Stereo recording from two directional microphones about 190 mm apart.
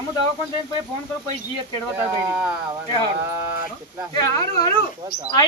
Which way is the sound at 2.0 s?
10° right (ahead or behind).